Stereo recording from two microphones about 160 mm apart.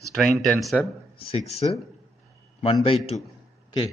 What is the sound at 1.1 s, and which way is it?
A man's voice, 40° left (ahead or behind).